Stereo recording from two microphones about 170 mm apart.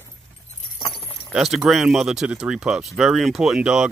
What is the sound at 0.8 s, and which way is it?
Keys jangling, 30° left (ahead or behind).